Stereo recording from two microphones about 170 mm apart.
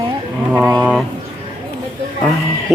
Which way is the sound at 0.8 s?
5° right (ahead or behind).